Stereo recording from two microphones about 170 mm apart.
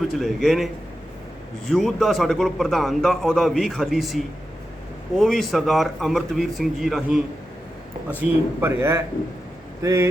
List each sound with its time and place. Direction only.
0.2 s a man's voice: centre (ahead or behind)
1.7 s a man's voice: centre (ahead or behind)
5.2 s a man's voice: centre (ahead or behind)
8.2 s speech: 15° right (ahead or behind)